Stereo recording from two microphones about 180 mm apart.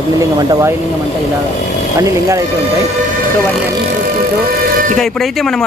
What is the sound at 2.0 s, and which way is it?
Speech, 15° right (ahead or behind).